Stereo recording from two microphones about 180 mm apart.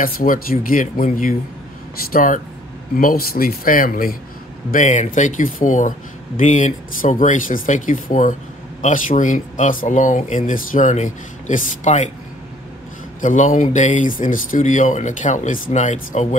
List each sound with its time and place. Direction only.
0.0 s speech: 50° left (ahead or behind)
13.2 s speech: 45° left (ahead or behind)